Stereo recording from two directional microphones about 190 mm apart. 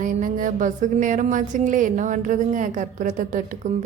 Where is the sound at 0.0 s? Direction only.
40° right (ahead or behind).